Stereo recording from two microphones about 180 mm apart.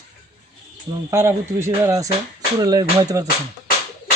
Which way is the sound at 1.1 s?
15° right (ahead or behind).